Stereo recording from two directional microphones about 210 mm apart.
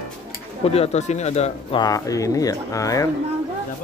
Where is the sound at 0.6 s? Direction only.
30° left (ahead or behind).